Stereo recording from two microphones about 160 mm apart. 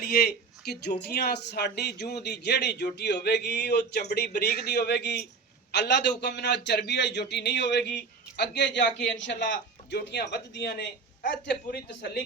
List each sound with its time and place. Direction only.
0.0 s speech: 75° left (ahead or behind)